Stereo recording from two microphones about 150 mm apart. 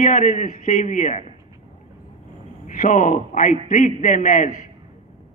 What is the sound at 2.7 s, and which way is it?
A man's voice, 60° left (ahead or behind).